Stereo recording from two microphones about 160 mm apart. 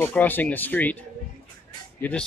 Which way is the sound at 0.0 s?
10° left (ahead or behind).